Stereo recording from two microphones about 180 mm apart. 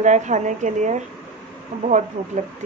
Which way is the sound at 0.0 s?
40° right (ahead or behind).